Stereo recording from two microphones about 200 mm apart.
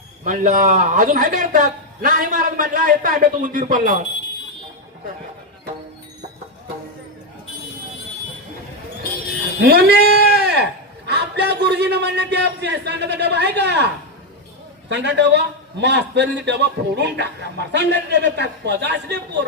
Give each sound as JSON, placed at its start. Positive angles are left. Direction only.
{"t": 0.3, "sound": "a man's voice", "side_deg": -40}
{"t": 9.6, "sound": "a man's voice", "side_deg": -50}